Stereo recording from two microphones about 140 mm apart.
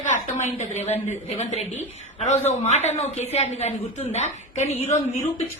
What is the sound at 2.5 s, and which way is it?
Speech, 55° left (ahead or behind).